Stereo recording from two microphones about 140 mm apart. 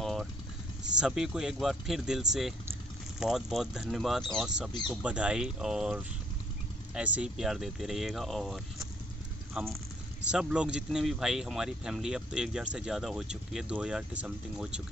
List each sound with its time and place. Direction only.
0.0 s vehicle: centre (ahead or behind)
0.9 s speech: 5° right (ahead or behind)